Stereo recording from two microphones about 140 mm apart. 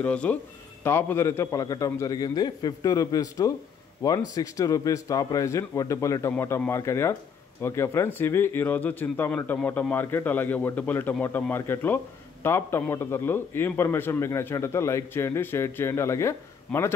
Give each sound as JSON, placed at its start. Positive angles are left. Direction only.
{"t": 0.0, "sound": "a man's voice", "side_deg": 10}